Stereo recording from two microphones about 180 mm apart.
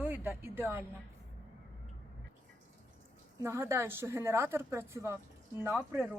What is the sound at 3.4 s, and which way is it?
A woman's voice, 15° right (ahead or behind).